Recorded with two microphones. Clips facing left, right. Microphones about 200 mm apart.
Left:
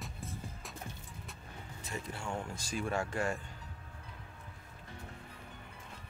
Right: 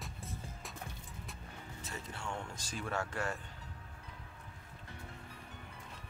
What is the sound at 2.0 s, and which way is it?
Speech, 10° left (ahead or behind).